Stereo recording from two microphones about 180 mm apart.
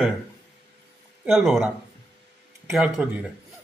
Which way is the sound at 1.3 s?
Centre (ahead or behind).